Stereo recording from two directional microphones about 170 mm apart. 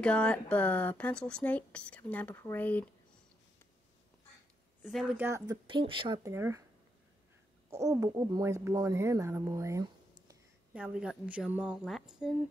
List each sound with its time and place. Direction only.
0.0 s speech: 5° left (ahead or behind)
5.1 s a woman's voice: 15° right (ahead or behind)
5.7 s speech: 30° right (ahead or behind)
7.7 s speech: 20° right (ahead or behind)
10.7 s a woman's voice: 5° right (ahead or behind)